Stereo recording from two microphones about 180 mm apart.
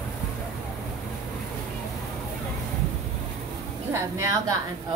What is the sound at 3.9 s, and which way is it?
Speech, 15° right (ahead or behind).